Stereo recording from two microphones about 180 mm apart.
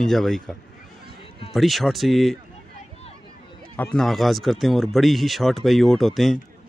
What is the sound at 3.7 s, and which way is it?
A man's voice, 5° left (ahead or behind).